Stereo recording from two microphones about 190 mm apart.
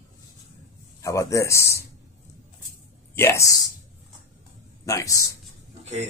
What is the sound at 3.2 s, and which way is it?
Speech, 15° left (ahead or behind).